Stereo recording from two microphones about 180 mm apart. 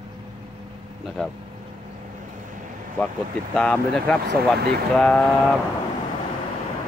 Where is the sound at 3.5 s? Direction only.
5° left (ahead or behind).